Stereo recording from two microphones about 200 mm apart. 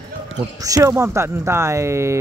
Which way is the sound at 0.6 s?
15° right (ahead or behind).